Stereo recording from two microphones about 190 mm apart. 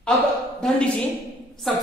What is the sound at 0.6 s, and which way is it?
Speech, 5° left (ahead or behind).